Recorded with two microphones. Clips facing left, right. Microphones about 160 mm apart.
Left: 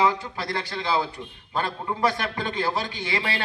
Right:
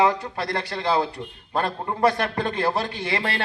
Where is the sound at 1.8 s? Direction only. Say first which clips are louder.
Right 4 dB; 35° right (ahead or behind).